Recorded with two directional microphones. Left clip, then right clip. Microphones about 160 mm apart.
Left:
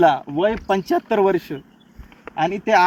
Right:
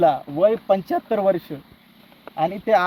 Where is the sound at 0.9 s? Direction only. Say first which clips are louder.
Left 3 dB; 30° right (ahead or behind).